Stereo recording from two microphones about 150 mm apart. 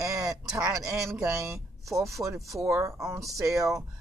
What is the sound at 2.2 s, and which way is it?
Speech, 20° right (ahead or behind).